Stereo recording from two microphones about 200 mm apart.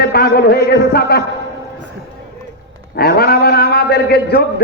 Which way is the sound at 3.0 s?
50° left (ahead or behind).